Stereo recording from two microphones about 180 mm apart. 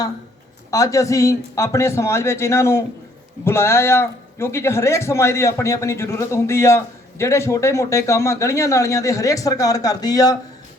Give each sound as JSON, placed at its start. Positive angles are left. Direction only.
{"t": 0.7, "sound": "speech", "side_deg": 15}